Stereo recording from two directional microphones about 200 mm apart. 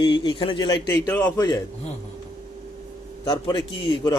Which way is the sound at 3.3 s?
20° left (ahead or behind).